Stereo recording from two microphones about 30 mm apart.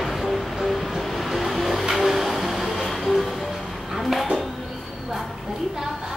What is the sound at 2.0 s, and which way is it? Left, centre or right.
Music, centre.